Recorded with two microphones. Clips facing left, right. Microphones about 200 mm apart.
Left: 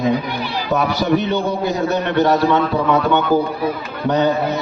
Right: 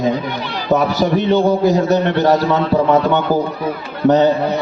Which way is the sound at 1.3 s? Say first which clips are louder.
Right 6 dB; 35° right (ahead or behind).